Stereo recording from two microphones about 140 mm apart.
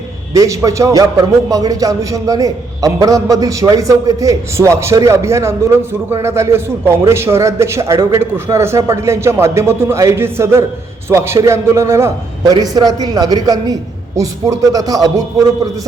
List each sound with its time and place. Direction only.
0.3 s a man's voice: 25° right (ahead or behind)